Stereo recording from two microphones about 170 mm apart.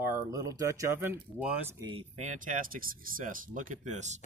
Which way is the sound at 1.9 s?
35° right (ahead or behind).